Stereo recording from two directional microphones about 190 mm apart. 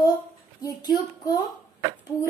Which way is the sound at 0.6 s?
20° left (ahead or behind).